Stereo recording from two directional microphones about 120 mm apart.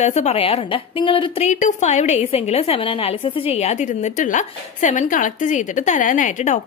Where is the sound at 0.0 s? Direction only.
70° left (ahead or behind); by 1.5 s 50° left (ahead or behind).